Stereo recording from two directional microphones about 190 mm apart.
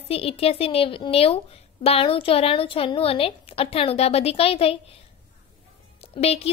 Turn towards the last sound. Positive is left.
turn(degrees=30)  # may be behind; listen again after turning